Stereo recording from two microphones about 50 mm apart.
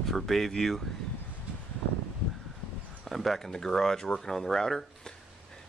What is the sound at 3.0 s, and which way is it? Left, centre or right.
Speech, centre.